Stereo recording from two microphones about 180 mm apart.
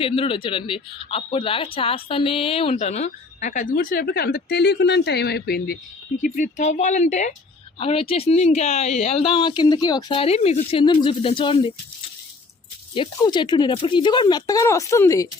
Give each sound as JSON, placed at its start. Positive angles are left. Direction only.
{"t": 0.0, "sound": "speech", "side_deg": 30}
{"t": 6.2, "sound": "speech", "side_deg": 45}
{"t": 12.9, "sound": "speech", "side_deg": 25}